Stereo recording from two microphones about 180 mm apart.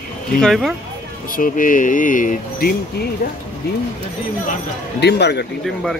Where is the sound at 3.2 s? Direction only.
60° left (ahead or behind).